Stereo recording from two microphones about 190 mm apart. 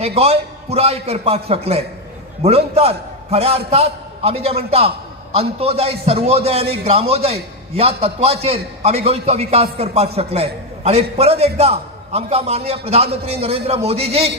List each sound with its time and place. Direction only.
0.0 s a man's voice: 35° right (ahead or behind)